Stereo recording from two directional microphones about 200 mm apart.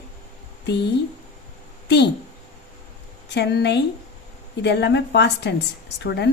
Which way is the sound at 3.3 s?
55° left (ahead or behind).